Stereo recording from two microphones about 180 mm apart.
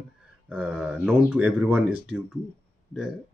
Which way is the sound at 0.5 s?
5° right (ahead or behind).